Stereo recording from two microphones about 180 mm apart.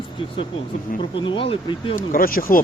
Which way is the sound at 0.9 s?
25° left (ahead or behind).